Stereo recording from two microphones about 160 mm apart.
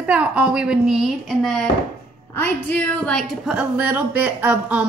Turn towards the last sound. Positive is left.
turn(degrees=-10)  # may be behind; listen again after turning